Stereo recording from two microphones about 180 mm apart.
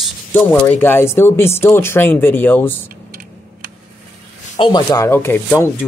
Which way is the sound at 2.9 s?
55° right (ahead or behind).